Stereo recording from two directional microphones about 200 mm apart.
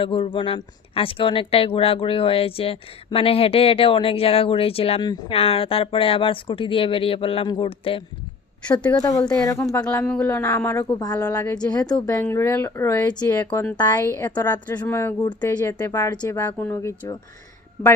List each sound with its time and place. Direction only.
0.0 s speech: 25° left (ahead or behind)
8.6 s a woman's voice: 5° left (ahead or behind)
9.0 s a woman's voice: 15° left (ahead or behind)